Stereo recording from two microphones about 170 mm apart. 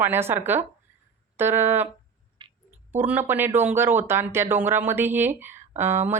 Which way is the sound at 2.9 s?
10° right (ahead or behind).